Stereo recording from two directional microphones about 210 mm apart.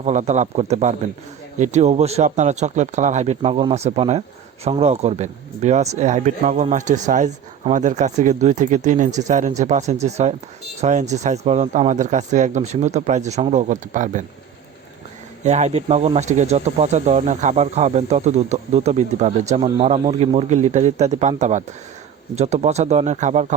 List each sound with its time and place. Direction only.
0.0 s speech: 35° right (ahead or behind)
15.4 s speech: 35° right (ahead or behind)